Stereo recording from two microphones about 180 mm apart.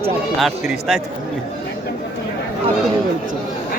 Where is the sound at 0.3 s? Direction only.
Centre (ahead or behind).